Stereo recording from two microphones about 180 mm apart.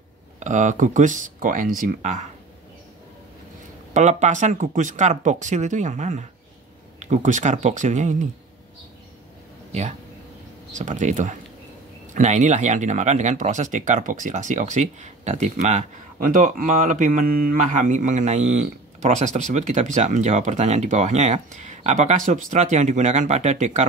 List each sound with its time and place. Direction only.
0.4 s speech: 40° right (ahead or behind)
3.9 s speech: 40° right (ahead or behind)
9.7 s speech: 40° right (ahead or behind)